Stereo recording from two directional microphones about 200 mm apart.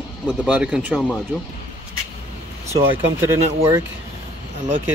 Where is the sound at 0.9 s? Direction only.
10° left (ahead or behind).